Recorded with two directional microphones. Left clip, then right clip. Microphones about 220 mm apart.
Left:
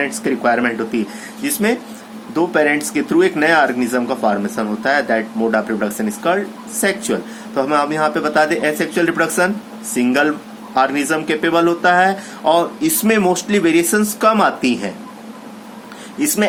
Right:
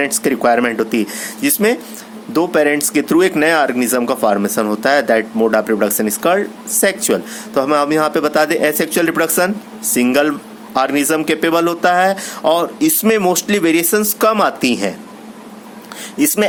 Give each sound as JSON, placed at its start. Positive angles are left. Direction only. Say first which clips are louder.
{"t": 0.0, "sound": "speech", "louder": "right 3 dB", "side_deg": -50}
{"t": 16.1, "sound": "speech", "louder": "right 3 dB", "side_deg": -50}